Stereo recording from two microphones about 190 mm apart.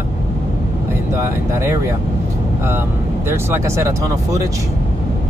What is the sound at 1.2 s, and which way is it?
Speech, 15° right (ahead or behind).